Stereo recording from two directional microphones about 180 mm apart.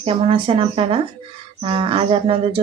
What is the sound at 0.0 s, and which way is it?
Speech, 30° right (ahead or behind).